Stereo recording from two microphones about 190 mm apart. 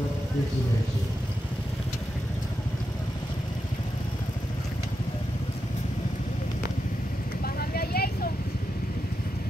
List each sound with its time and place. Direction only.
7.4 s vehicle: 55° left (ahead or behind)